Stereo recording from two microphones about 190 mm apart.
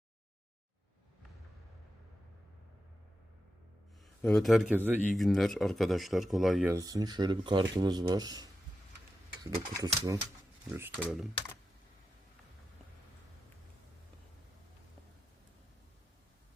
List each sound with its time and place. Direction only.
4.2 s speech: 5° left (ahead or behind)
5.0 s speech: centre (ahead or behind)
6.7 s speech: 20° right (ahead or behind)
11.0 s speech: 5° right (ahead or behind)